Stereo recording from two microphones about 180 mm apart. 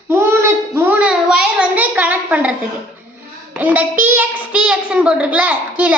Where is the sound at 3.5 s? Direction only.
10° right (ahead or behind).